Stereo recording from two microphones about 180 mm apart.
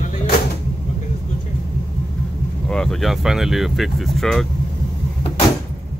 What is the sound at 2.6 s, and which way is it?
Speech, 5° left (ahead or behind).